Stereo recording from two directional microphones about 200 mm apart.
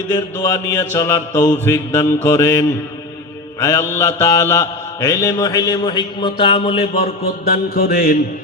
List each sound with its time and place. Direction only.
0.1 s mantra: 15° left (ahead or behind)
6.9 s mantra: 45° left (ahead or behind)